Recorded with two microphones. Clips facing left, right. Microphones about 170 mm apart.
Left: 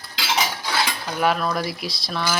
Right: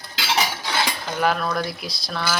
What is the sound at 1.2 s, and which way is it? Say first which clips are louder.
Speech: left 1 dB; centre (ahead or behind).